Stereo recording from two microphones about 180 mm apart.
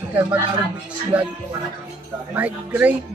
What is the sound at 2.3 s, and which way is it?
Speech, 10° right (ahead or behind).